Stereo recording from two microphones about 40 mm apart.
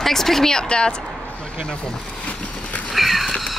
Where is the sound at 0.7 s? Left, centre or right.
Left.